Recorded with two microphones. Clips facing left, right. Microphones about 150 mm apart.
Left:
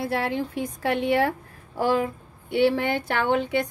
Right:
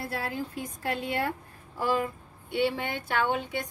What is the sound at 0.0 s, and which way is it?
A woman's voice, 80° left.